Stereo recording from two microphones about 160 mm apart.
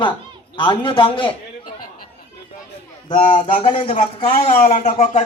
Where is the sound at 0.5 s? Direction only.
30° left (ahead or behind).